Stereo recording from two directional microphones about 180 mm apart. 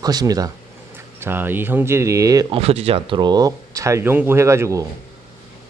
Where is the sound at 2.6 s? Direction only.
35° right (ahead or behind); by 4.8 s 15° right (ahead or behind).